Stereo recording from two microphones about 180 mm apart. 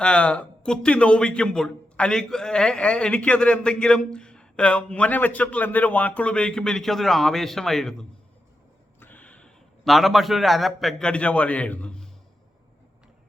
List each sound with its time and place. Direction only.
0.0 s a man's voice: 5° left (ahead or behind)